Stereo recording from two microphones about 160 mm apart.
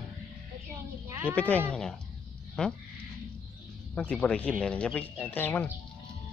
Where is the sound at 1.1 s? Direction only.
15° right (ahead or behind).